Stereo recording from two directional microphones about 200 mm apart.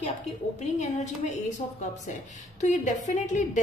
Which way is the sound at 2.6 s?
40° left (ahead or behind).